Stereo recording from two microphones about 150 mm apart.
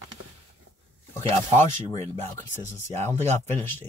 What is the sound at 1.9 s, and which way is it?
Speech, 20° left (ahead or behind).